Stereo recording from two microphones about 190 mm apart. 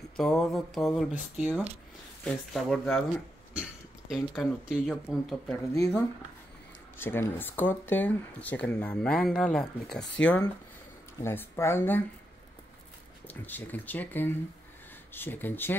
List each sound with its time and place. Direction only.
0.2 s speech: centre (ahead or behind)
4.1 s speech: 5° right (ahead or behind)
5.8 s speech: 15° left (ahead or behind)
11.1 s speech: 15° left (ahead or behind)
13.3 s speech: 10° left (ahead or behind)